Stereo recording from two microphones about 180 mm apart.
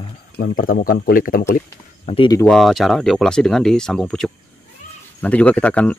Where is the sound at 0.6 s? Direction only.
55° left (ahead or behind).